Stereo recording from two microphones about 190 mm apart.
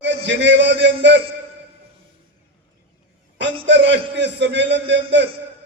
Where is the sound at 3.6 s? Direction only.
70° right (ahead or behind).